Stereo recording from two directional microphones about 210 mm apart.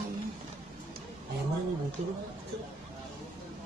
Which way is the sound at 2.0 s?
30° right (ahead or behind).